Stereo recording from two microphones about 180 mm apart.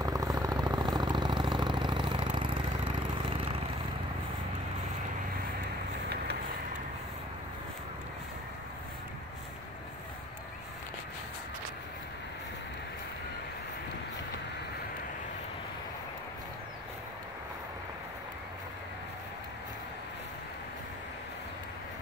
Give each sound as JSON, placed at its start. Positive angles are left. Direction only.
{"t": 0.0, "sound": "vehicle", "side_deg": -20}